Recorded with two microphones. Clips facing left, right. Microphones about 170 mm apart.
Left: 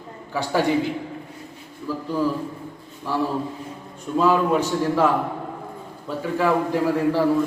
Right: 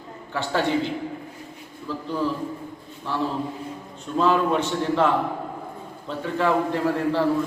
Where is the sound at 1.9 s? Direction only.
5° left (ahead or behind).